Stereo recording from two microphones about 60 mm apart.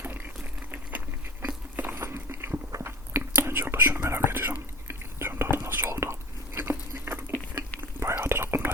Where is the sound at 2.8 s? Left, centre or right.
Right.